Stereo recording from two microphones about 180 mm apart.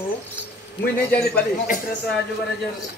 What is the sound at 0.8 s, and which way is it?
Speech, 60° left (ahead or behind).